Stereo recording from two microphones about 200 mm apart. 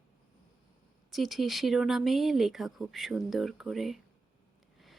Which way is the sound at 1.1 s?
Centre (ahead or behind).